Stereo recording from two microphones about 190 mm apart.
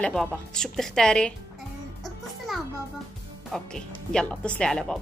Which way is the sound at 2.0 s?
Centre (ahead or behind).